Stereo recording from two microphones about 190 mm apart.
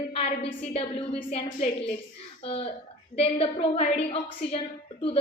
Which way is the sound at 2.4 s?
30° left (ahead or behind).